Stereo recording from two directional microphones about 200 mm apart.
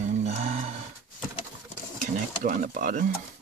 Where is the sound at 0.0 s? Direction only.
35° right (ahead or behind).